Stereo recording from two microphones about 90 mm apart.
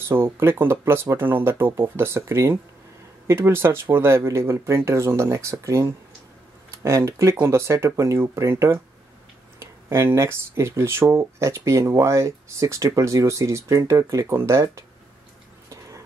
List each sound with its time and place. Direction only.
0.1 s speech: 25° right (ahead or behind)